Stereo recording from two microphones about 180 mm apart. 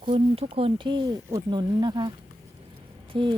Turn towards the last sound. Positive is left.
turn(degrees=-30)  # may be behind; listen again after turning